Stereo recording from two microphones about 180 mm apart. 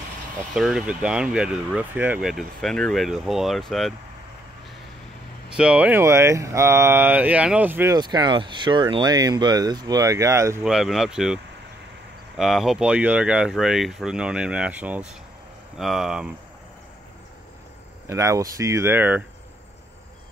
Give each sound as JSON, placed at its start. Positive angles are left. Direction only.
{"t": 0.6, "sound": "speech", "side_deg": -5}
{"t": 5.5, "sound": "speech", "side_deg": -5}
{"t": 10.6, "sound": "speech", "side_deg": 0}
{"t": 12.4, "sound": "speech", "side_deg": 0}
{"t": 18.0, "sound": "speech", "side_deg": -15}